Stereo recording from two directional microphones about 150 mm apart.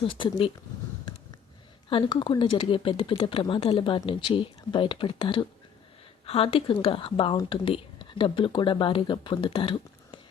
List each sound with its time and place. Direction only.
0.0 s speech: 35° left (ahead or behind)
1.9 s speech: 35° left (ahead or behind)